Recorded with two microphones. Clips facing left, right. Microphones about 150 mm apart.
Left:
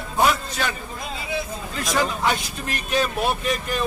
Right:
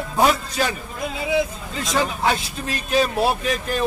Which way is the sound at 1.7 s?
25° right (ahead or behind).